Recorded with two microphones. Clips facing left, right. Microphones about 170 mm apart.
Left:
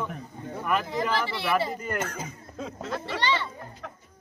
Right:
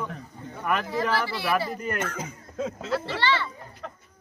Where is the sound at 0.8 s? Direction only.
20° left (ahead or behind).